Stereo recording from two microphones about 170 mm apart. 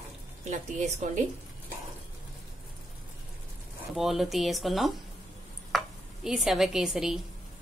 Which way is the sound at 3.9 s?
Centre (ahead or behind).